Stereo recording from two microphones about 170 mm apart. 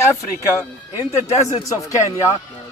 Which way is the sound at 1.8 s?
20° left (ahead or behind).